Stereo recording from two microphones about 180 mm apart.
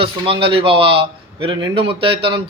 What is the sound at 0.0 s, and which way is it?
Speech, 30° right (ahead or behind).